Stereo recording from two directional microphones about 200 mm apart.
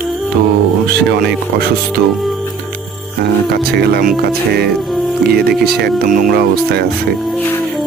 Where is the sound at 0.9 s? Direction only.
55° right (ahead or behind).